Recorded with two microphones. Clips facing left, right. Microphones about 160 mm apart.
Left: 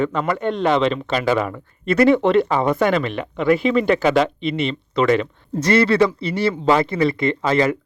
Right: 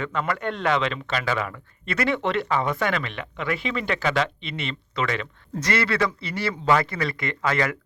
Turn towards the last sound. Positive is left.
turn(degrees=25)  # may be behind; listen again after turning